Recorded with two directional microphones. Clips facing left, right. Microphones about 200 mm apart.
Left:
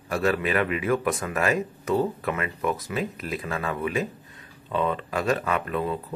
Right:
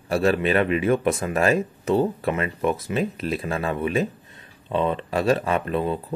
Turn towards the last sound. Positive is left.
turn(degrees=-25)  # may be behind; listen again after turning